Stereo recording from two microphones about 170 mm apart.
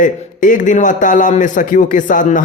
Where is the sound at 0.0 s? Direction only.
50° left (ahead or behind).